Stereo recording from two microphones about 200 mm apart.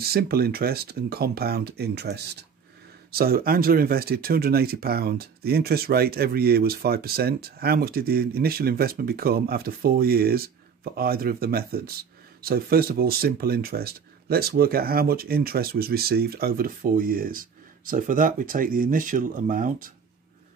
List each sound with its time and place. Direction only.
0.0 s speech: 50° right (ahead or behind)